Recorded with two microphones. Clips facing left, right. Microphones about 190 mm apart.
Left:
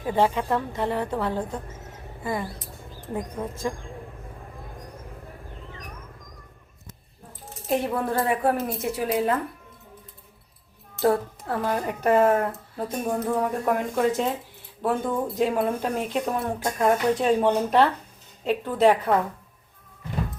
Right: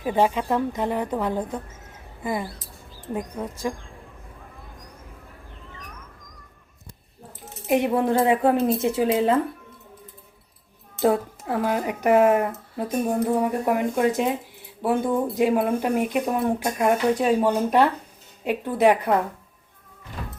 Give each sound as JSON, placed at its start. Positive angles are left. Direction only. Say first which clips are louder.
{"t": 0.0, "sound": "a woman's voice", "louder": "right 1 dB", "side_deg": -15}
{"t": 3.6, "sound": "a woman's voice", "louder": "right 1 dB", "side_deg": -15}
{"t": 7.7, "sound": "speech", "louder": "right 4 dB", "side_deg": -20}
{"t": 10.9, "sound": "a woman's voice", "louder": "right 1 dB", "side_deg": -15}